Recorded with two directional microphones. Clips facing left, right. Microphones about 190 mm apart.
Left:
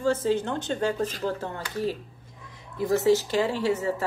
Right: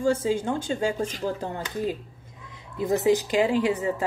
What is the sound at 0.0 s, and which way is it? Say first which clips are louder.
A woman's voice: right 1 dB; 15° right (ahead or behind).